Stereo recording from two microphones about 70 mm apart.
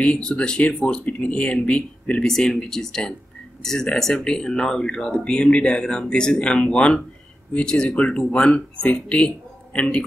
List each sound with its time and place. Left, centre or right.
0.0 s speech: centre
2.2 s speech: centre